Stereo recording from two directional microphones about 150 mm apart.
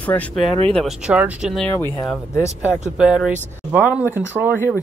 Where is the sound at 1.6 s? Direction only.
15° left (ahead or behind).